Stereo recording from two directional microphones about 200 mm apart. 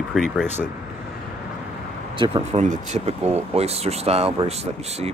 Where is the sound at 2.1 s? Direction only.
25° right (ahead or behind).